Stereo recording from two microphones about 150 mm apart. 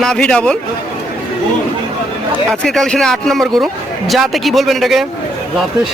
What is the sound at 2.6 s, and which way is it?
Speech, 5° left (ahead or behind).